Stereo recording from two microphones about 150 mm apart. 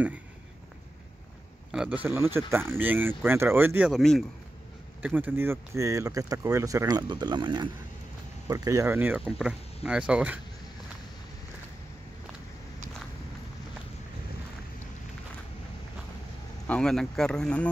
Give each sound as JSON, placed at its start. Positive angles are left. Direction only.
{"t": 1.7, "sound": "speech", "side_deg": -5}
{"t": 3.9, "sound": "speech", "side_deg": 0}
{"t": 5.0, "sound": "speech", "side_deg": -10}
{"t": 16.6, "sound": "speech", "side_deg": 5}